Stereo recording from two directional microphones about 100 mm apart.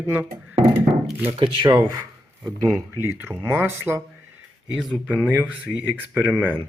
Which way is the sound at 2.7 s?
20° right (ahead or behind).